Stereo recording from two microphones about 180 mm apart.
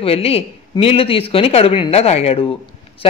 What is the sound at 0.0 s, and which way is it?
Speech, 35° left (ahead or behind).